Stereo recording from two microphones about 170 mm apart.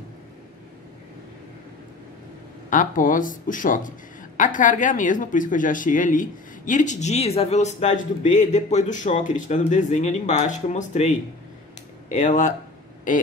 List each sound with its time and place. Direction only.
2.7 s speech: 50° left (ahead or behind)
12.2 s speech: 45° left (ahead or behind)